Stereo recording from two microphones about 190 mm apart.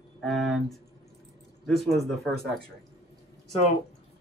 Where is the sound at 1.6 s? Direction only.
Centre (ahead or behind).